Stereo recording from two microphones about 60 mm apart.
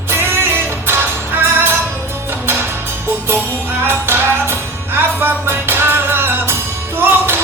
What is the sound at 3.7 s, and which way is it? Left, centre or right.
Music, right.